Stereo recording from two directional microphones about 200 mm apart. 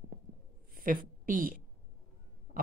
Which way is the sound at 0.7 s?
45° right (ahead or behind).